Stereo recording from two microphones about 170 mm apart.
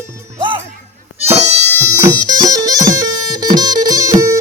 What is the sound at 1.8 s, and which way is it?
Bagpipes, 20° right (ahead or behind).